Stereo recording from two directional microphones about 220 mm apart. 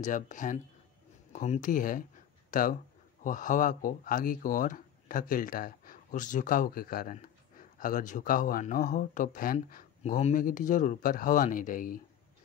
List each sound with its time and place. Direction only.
0.0 s speech: 35° left (ahead or behind)